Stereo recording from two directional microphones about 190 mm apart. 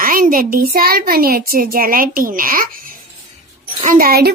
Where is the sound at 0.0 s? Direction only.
50° right (ahead or behind).